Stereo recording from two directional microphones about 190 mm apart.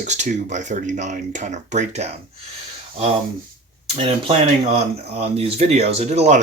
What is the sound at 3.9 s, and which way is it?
Speech, 30° right (ahead or behind).